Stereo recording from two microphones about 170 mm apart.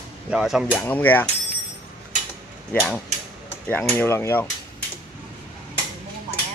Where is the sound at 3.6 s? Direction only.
10° left (ahead or behind).